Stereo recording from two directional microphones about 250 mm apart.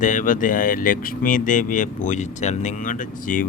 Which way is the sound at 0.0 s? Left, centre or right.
Left.